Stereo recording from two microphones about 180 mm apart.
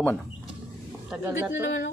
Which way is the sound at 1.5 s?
90° left.